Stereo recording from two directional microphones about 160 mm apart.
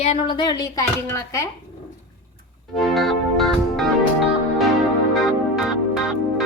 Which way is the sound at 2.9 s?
Centre (ahead or behind).